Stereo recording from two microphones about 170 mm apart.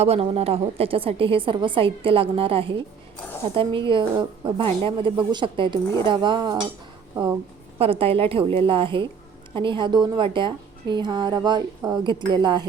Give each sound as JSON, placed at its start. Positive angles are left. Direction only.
{"t": 0.0, "sound": "a woman's voice", "side_deg": -35}
{"t": 7.8, "sound": "a woman's voice", "side_deg": -35}